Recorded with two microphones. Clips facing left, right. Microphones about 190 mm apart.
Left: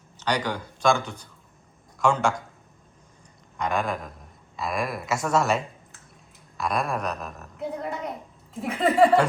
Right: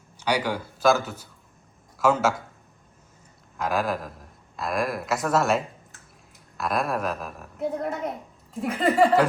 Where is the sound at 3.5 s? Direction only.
5° right (ahead or behind).